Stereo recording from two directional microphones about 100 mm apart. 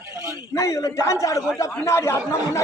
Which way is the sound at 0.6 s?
30° left (ahead or behind).